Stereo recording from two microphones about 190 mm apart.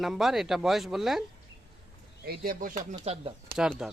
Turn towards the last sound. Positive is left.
turn(degrees=-5)  # may be behind; listen again after turning